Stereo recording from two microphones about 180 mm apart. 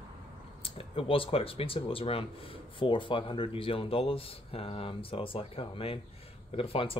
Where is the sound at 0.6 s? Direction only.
30° left (ahead or behind).